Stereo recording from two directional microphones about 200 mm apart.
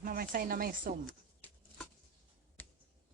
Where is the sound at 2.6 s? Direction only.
10° left (ahead or behind).